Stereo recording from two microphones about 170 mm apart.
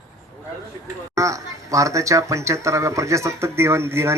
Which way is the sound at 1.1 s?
20° right (ahead or behind).